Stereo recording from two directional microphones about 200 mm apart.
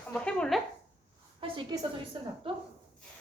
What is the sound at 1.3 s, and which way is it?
Speech, 25° right (ahead or behind).